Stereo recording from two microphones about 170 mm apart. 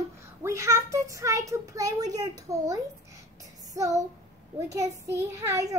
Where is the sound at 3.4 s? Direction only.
20° right (ahead or behind).